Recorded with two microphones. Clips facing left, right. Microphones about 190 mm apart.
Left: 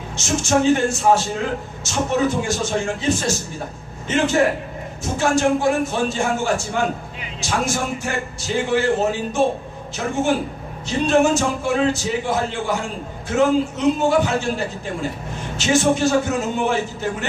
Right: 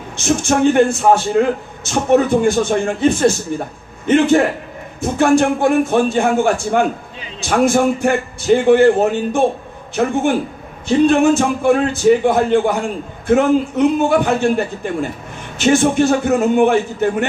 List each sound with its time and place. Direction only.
0.2 s a man's voice: 55° right (ahead or behind)